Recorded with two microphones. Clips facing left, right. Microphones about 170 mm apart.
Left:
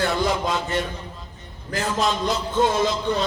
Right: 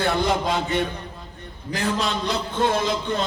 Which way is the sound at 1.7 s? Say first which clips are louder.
Left 1 dB; 60° right (ahead or behind).